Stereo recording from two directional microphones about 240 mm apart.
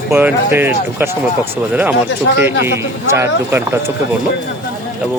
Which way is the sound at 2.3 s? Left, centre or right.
Left.